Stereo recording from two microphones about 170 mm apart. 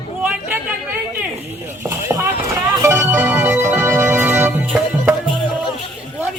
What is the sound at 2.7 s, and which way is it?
Music, 15° right (ahead or behind).